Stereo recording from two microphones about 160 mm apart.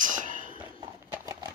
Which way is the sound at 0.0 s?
55° right (ahead or behind).